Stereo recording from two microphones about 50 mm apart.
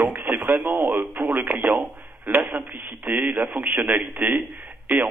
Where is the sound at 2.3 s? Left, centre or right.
Right.